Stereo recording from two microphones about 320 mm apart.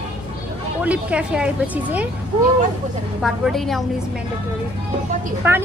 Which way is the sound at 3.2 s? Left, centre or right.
Centre.